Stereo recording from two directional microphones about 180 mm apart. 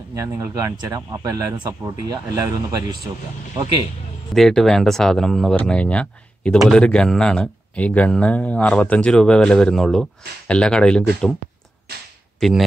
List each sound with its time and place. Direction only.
0.1 s speech: 15° right (ahead or behind)
4.3 s speech: centre (ahead or behind)
12.4 s speech: centre (ahead or behind)